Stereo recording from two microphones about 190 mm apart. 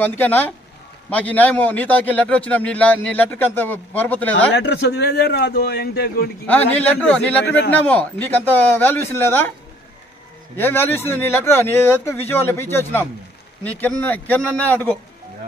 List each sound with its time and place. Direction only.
0.0 s a man's voice: 10° left (ahead or behind)
4.6 s a man's voice: 60° left (ahead or behind)
6.4 s a man's voice: 10° left (ahead or behind)
10.5 s a man's voice: 10° left (ahead or behind)